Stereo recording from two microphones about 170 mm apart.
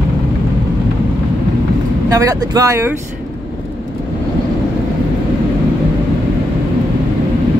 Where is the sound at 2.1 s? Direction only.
20° right (ahead or behind).